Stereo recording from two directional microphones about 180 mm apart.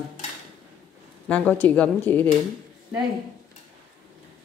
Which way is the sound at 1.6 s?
10° left (ahead or behind).